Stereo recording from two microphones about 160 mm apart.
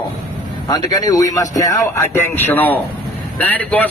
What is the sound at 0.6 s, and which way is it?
A man's voice, 25° left (ahead or behind).